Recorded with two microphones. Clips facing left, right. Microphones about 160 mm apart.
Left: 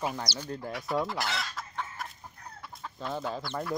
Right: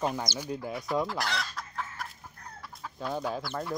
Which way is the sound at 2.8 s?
Centre (ahead or behind).